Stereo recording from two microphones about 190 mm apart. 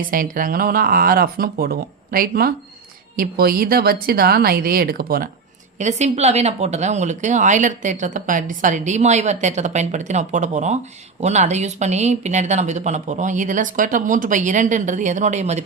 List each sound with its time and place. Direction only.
0.1 s speech: 45° right (ahead or behind)
5.8 s speech: 35° right (ahead or behind)